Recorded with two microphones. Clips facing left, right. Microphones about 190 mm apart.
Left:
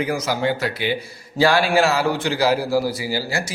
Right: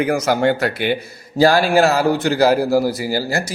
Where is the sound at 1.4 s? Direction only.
40° right (ahead or behind).